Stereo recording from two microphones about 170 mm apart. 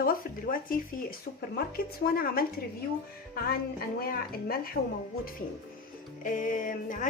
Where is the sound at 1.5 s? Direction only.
60° left (ahead or behind).